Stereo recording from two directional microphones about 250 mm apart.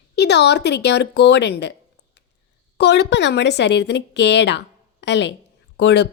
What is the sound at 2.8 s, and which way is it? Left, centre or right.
A woman's voice, left.